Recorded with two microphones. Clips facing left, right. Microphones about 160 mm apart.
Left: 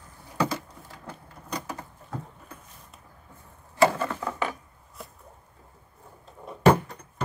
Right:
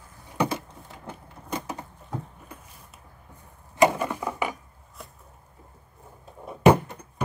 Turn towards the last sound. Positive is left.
turn(degrees=-10)  # may be behind; listen again after turning